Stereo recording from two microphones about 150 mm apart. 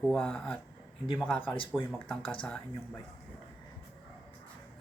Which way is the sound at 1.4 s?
35° left (ahead or behind).